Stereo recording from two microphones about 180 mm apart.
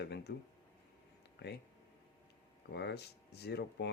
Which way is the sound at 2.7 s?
65° left (ahead or behind).